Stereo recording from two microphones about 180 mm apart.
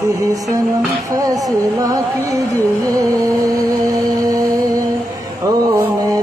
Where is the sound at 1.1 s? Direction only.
20° right (ahead or behind).